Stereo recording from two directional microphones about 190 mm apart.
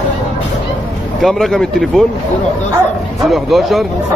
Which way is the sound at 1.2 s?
Centre (ahead or behind).